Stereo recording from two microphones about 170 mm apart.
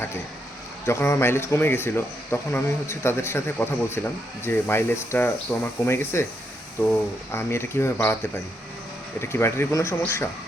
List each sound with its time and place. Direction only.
0.9 s speech: 15° left (ahead or behind)
9.3 s speech: 15° left (ahead or behind)